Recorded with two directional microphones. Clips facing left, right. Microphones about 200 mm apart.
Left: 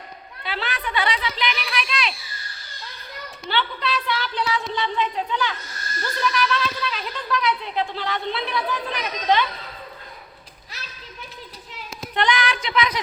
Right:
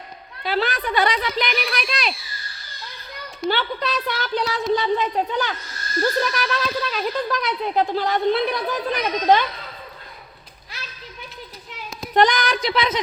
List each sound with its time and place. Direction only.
0.4 s speech: 40° right (ahead or behind)
3.5 s speech: 45° right (ahead or behind)
12.1 s speech: 40° right (ahead or behind)